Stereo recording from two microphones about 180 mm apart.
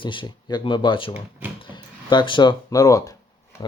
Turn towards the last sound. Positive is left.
turn(degrees=20)  # may be behind; listen again after turning